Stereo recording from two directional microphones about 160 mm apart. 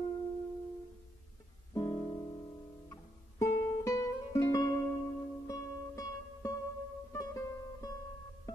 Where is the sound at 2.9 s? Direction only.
20° left (ahead or behind).